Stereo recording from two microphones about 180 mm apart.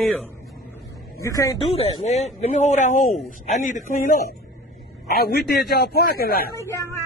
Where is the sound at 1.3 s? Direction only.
20° left (ahead or behind).